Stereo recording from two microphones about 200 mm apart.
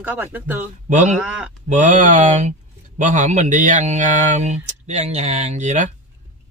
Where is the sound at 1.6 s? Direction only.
35° right (ahead or behind).